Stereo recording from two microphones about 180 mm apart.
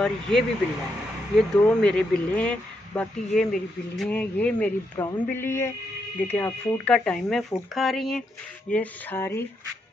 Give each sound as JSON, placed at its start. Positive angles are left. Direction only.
{"t": 0.0, "sound": "speech", "side_deg": 0}